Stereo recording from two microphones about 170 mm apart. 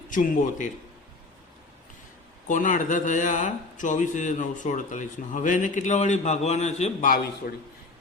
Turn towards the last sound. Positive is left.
turn(degrees=55)  # may be behind; listen again after turning